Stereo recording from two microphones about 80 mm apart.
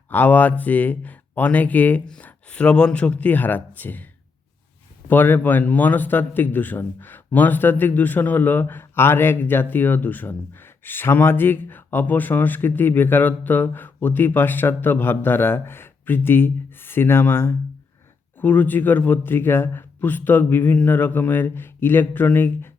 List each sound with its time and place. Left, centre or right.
0.1 s a man's voice: left